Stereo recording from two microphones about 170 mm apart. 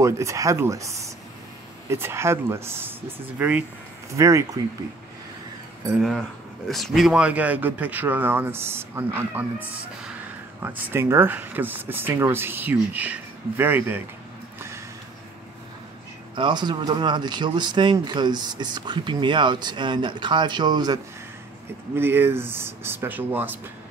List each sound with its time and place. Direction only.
0.0 s speech: 15° right (ahead or behind)
5.9 s speech: centre (ahead or behind)
10.6 s speech: 15° right (ahead or behind)
16.3 s speech: 25° right (ahead or behind)
21.9 s speech: 15° right (ahead or behind)